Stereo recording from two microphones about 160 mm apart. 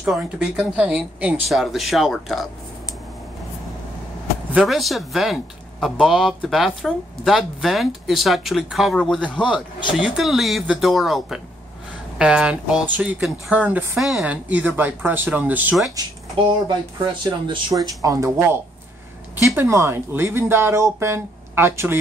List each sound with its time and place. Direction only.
0.0 s speech: 5° right (ahead or behind)
4.5 s speech: centre (ahead or behind)
16.0 s speech: 25° right (ahead or behind)